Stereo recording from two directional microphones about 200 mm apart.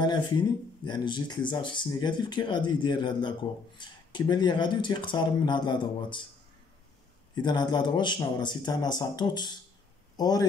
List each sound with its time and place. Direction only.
0.0 s speech: 20° left (ahead or behind)
7.4 s a man's voice: 20° left (ahead or behind)